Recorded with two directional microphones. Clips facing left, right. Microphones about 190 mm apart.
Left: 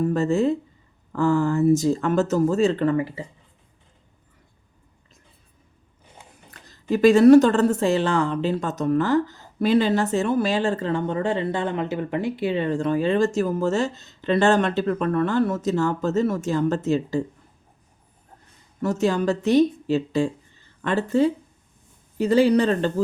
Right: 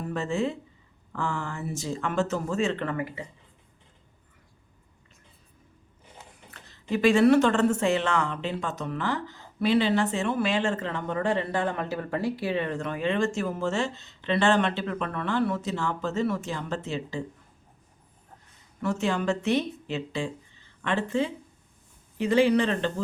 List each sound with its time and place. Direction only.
0.0 s speech: 40° left (ahead or behind)
6.5 s speech: 40° left (ahead or behind)
18.8 s speech: 40° left (ahead or behind)